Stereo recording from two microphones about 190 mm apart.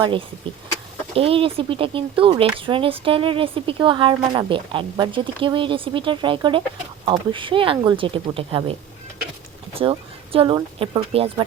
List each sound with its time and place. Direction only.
0.0 s speech: 25° right (ahead or behind)
9.7 s speech: 30° right (ahead or behind)